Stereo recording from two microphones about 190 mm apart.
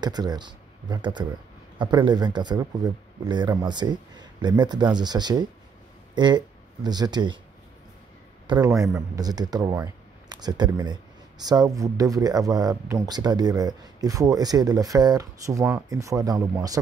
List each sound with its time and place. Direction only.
0.0 s speech: 20° right (ahead or behind)
8.5 s a man's voice: 20° right (ahead or behind)